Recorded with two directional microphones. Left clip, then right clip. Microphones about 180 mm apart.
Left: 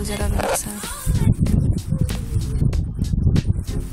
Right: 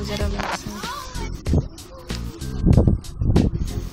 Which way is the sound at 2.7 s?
Centre (ahead or behind).